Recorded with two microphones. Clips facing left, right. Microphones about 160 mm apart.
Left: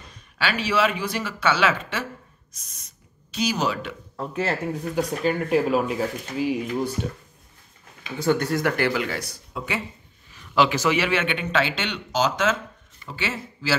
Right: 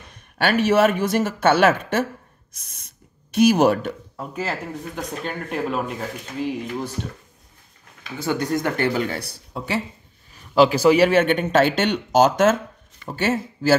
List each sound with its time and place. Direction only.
0.1 s a man's voice: 55° right (ahead or behind)
4.5 s speech: 5° left (ahead or behind)
8.0 s speech: 5° right (ahead or behind)
8.5 s a man's voice: 20° right (ahead or behind); by 13.7 s 50° right (ahead or behind)